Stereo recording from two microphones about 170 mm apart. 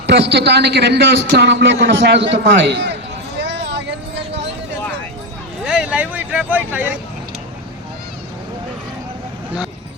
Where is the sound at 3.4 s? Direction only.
90° right.